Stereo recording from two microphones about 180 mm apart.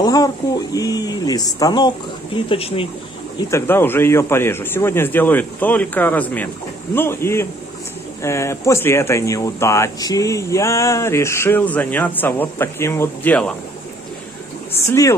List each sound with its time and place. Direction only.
0.0 s a sound: 20° left (ahead or behind)
0.7 s speech: 20° left (ahead or behind)
3.3 s speech: 15° left (ahead or behind)
14.8 s speech: 15° left (ahead or behind)